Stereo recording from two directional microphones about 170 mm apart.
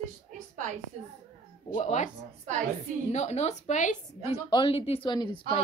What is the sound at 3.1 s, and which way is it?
Speech, 40° left (ahead or behind).